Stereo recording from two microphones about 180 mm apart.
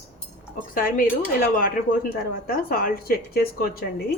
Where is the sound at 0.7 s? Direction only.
50° left (ahead or behind).